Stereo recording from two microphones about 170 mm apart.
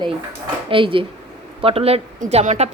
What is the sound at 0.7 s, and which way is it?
A woman's voice, 30° right (ahead or behind).